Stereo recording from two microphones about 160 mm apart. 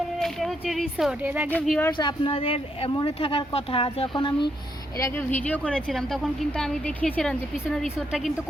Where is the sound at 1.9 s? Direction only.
30° left (ahead or behind).